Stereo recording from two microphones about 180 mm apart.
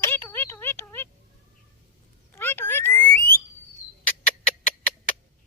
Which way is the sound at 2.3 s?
10° left (ahead or behind).